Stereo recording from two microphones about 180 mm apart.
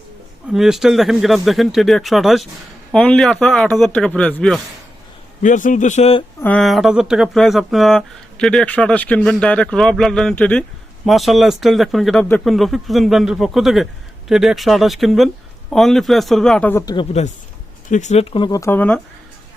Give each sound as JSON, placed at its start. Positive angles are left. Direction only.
{"t": 0.5, "sound": "speech", "side_deg": -5}
{"t": 5.4, "sound": "a man's voice", "side_deg": 45}
{"t": 6.4, "sound": "speech", "side_deg": 5}
{"t": 16.8, "sound": "speech", "side_deg": 25}
{"t": 17.1, "sound": "speech", "side_deg": 40}